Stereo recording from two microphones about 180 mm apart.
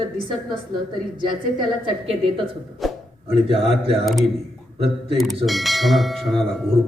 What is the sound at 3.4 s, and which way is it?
A woman's voice, 30° right (ahead or behind).